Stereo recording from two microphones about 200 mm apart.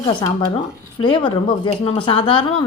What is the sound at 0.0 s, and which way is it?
Speech, 25° left (ahead or behind).